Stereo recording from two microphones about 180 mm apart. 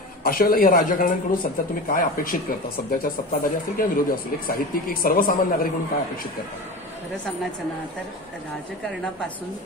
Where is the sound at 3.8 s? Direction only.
50° left (ahead or behind).